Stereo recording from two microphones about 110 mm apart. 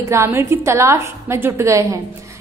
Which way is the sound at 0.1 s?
25° right (ahead or behind).